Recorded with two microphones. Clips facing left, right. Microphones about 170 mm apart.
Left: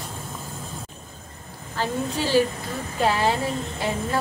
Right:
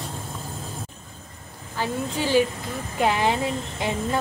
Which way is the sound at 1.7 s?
15° right (ahead or behind).